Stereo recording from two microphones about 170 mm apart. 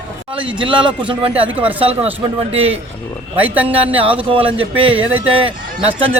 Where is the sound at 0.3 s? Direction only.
30° right (ahead or behind).